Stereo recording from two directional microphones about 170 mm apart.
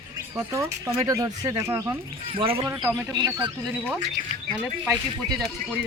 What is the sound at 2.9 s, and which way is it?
Speech, 15° right (ahead or behind).